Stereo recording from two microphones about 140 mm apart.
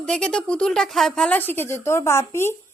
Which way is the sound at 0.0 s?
5° left (ahead or behind).